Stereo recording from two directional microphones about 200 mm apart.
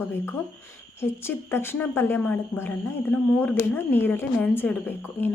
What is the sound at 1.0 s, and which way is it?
Speech, 10° left (ahead or behind).